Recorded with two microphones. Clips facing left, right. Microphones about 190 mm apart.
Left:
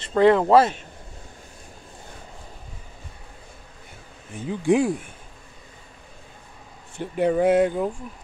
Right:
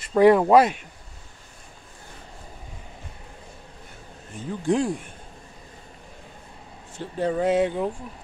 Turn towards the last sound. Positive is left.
turn(degrees=10)  # may be behind; listen again after turning